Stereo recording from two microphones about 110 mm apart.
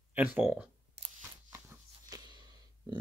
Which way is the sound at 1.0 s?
65° right (ahead or behind).